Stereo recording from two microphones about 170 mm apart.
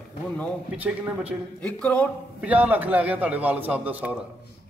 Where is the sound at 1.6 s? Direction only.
10° left (ahead or behind).